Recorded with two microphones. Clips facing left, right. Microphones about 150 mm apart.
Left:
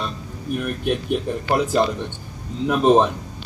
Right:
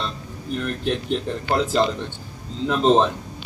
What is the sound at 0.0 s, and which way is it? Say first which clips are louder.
A man's voice: left 1 dB; 10° left (ahead or behind).